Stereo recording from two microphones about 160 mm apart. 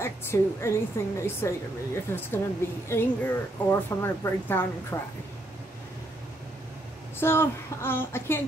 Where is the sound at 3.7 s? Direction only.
15° left (ahead or behind).